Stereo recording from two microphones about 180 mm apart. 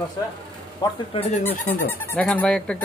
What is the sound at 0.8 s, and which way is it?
Speech, 25° left (ahead or behind).